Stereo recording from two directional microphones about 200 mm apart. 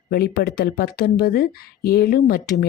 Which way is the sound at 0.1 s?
50° left (ahead or behind).